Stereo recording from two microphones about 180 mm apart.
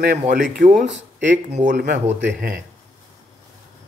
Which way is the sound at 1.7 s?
70° right (ahead or behind).